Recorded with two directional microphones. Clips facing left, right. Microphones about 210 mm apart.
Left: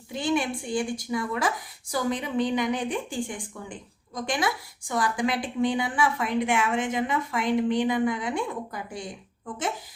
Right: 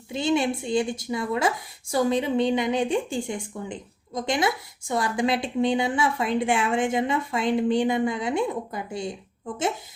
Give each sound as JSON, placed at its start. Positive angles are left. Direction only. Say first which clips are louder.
{"t": 0.1, "sound": "a woman's voice", "louder": "right 3 dB", "side_deg": -25}